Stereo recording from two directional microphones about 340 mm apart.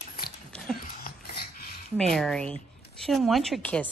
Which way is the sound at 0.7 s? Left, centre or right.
Left.